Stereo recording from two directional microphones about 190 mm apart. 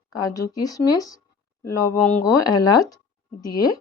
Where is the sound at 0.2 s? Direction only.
20° left (ahead or behind).